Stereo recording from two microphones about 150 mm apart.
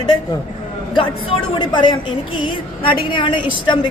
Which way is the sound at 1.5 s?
30° left (ahead or behind).